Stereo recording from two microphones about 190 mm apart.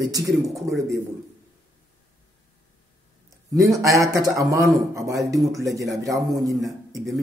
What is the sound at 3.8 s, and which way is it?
Speech, 15° right (ahead or behind).